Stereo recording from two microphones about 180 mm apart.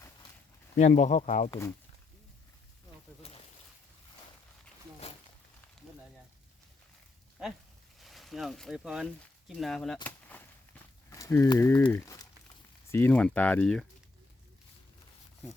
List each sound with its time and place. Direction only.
0.8 s speech: 40° left (ahead or behind)
1.5 s speech: 15° left (ahead or behind)
7.4 s speech: 5° right (ahead or behind)
10.1 s a sound: 10° left (ahead or behind)
11.1 s speech: 15° left (ahead or behind)